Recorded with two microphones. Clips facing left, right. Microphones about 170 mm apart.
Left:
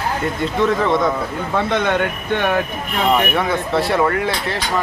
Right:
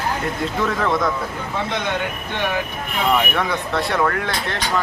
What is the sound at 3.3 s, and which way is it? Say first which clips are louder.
Speech: left 4 dB; centre (ahead or behind).